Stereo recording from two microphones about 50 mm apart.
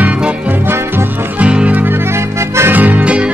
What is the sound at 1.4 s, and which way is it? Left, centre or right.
Music, right.